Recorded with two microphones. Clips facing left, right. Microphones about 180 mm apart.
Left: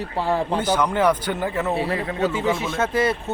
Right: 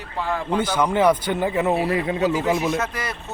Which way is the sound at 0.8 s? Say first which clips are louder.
Right 5 dB; 10° right (ahead or behind).